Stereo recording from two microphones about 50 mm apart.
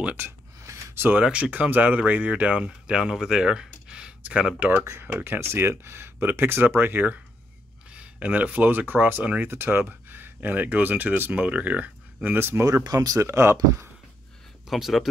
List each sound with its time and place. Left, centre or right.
1.2 s speech: right
2.9 s speech: centre
4.6 s speech: right
5.4 s speech: right
6.1 s speech: right
7.9 s speech: right
9.5 s speech: right
12.4 s speech: right
13.2 s speech: right
14.7 s speech: centre